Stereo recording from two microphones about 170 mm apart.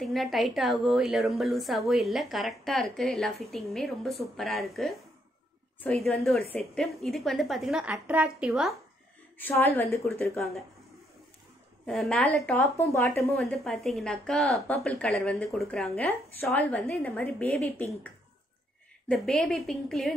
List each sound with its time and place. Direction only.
0.0 s a woman's voice: centre (ahead or behind)
9.4 s a woman's voice: 10° left (ahead or behind)
11.8 s a woman's voice: 5° left (ahead or behind)
13.4 s a woman's voice: centre (ahead or behind)
19.0 s a woman's voice: centre (ahead or behind)